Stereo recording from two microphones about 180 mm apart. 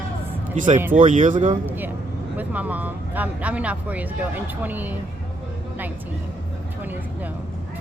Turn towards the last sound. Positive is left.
turn(degrees=-10)  # may be behind; listen again after turning